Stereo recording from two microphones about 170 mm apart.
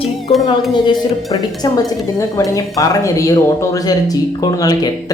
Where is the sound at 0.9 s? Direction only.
20° left (ahead or behind).